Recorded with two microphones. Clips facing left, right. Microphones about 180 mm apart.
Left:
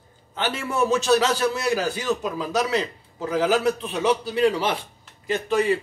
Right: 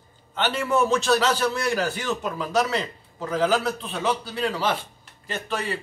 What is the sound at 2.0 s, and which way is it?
A man's voice, 15° left (ahead or behind).